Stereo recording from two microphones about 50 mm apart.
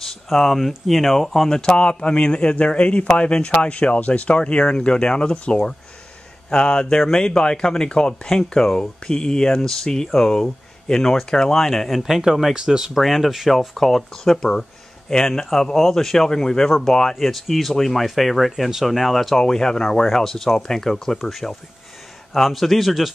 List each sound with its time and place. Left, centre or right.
0.0 s speech: centre
1.6 s speech: centre
12.9 s speech: centre